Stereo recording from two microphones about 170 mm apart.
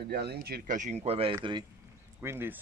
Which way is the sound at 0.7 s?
40° right (ahead or behind).